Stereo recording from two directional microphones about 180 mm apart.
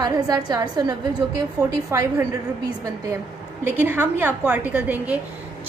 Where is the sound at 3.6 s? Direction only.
10° right (ahead or behind).